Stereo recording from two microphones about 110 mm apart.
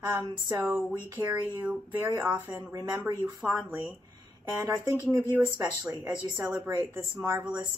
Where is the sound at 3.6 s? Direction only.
5° right (ahead or behind).